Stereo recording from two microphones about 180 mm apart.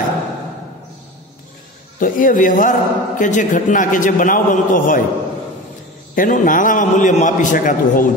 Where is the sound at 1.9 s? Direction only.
50° left (ahead or behind).